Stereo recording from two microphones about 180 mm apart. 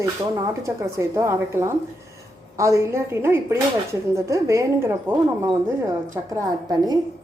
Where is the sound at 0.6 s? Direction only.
15° right (ahead or behind).